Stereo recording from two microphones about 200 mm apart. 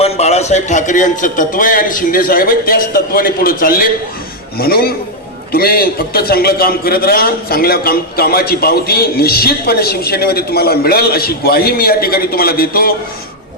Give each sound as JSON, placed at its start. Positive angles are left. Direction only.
{"t": 0.0, "sound": "a man's voice", "side_deg": 35}